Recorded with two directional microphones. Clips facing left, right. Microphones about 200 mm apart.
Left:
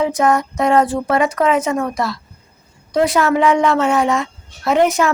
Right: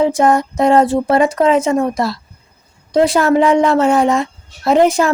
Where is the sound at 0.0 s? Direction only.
30° right (ahead or behind).